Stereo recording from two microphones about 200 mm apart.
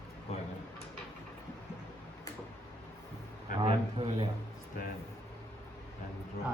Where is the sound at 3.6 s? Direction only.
25° right (ahead or behind).